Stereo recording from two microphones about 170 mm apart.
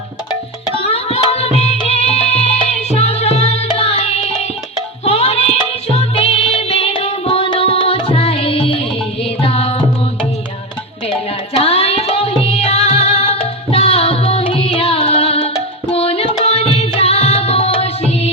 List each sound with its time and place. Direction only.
0.8 s music: 35° left (ahead or behind)
11.6 s music: 35° left (ahead or behind)